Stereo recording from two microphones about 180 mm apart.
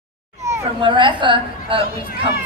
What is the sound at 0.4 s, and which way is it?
Speech, 20° right (ahead or behind).